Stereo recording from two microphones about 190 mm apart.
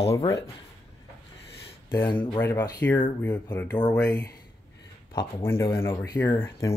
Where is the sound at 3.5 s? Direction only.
20° left (ahead or behind).